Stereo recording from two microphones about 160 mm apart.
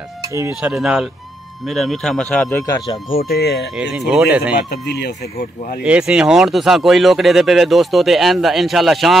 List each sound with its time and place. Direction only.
0.6 s speech: 5° right (ahead or behind)
2.6 s speech: 25° left (ahead or behind)
3.1 s speech: 75° left (ahead or behind)
4.1 s speech: 5° right (ahead or behind)
4.6 s speech: 90° left
5.9 s speech: 5° right (ahead or behind)